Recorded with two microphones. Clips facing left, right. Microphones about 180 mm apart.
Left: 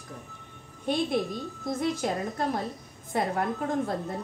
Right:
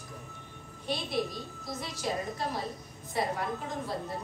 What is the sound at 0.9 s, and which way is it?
A woman's voice, 50° left (ahead or behind).